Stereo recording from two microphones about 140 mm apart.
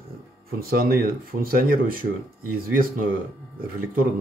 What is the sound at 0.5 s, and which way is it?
Speech, 90° right.